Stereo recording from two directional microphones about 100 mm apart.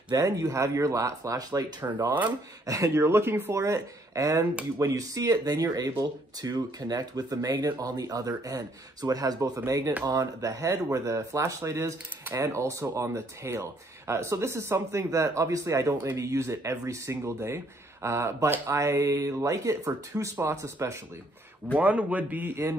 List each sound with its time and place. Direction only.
0.1 s speech: 35° right (ahead or behind)
21.7 s speech: 15° right (ahead or behind)